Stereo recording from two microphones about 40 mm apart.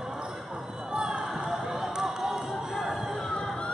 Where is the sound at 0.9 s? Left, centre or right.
Right.